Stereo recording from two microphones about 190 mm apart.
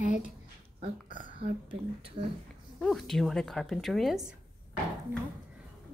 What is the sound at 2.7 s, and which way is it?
A woman's voice, centre (ahead or behind).